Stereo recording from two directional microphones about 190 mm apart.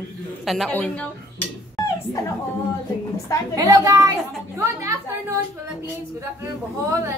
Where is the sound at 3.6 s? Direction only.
20° right (ahead or behind).